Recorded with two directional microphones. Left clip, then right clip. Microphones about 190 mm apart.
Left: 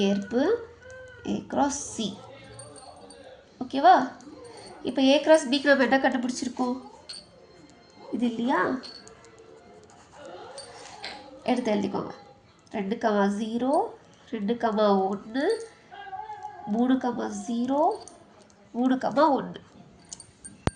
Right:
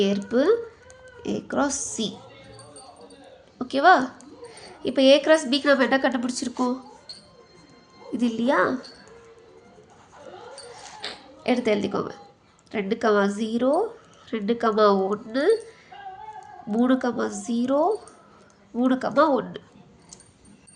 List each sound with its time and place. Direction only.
0.0 s speech: 20° right (ahead or behind)
3.6 s a woman's voice: 20° right (ahead or behind)
8.2 s a woman's voice: 30° right (ahead or behind)
11.0 s a sound: 20° right (ahead or behind)
12.7 s a woman's voice: 20° right (ahead or behind)
16.7 s a woman's voice: 25° right (ahead or behind)